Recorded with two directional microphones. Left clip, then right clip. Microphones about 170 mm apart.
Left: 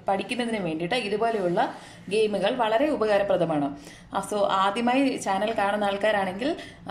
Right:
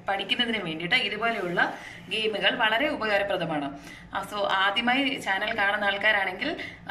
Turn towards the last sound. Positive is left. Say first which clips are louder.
# even
turn(degrees=35)  # may be behind; listen again after turning